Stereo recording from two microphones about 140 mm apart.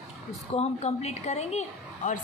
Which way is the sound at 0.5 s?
50° left (ahead or behind).